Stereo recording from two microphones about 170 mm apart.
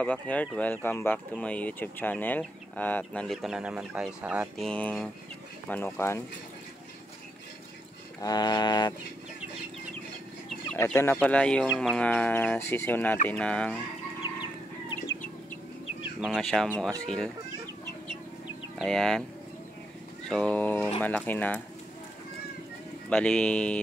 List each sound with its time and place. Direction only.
0.0 s speech: 10° left (ahead or behind); by 4.5 s 10° right (ahead or behind)
4.6 s speech: 5° left (ahead or behind)
8.2 s a sound: 25° left (ahead or behind)
10.7 s speech: 15° left (ahead or behind)
16.2 s speech: centre (ahead or behind)
18.8 s speech: 5° left (ahead or behind)
20.2 s speech: 5° left (ahead or behind)
23.0 s speech: 5° left (ahead or behind)